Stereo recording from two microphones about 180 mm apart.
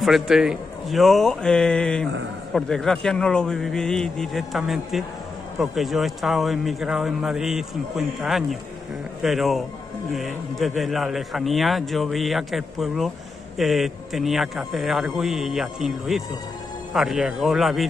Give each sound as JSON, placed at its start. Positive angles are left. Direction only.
{"t": 0.0, "sound": "a man's voice", "side_deg": 0}